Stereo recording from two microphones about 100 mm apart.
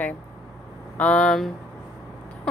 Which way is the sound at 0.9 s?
15° left (ahead or behind).